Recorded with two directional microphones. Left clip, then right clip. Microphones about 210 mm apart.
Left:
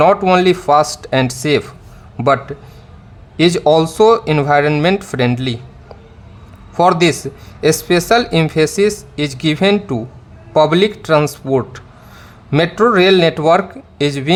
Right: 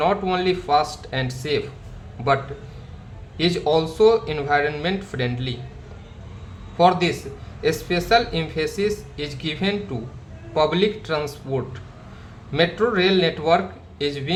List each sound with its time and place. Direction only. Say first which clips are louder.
0.0 s speech: left 10 dB; 55° left (ahead or behind)
6.7 s speech: left 6 dB; 55° left (ahead or behind)